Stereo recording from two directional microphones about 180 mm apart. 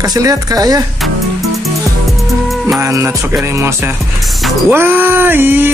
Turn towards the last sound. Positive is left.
turn(degrees=-10)  # may be behind; listen again after turning